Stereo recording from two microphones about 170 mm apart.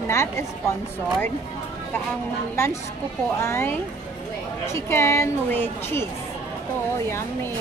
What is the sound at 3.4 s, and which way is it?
Speech, 15° left (ahead or behind).